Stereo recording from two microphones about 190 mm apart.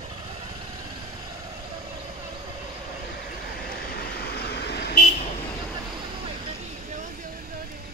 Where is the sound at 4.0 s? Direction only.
55° left (ahead or behind).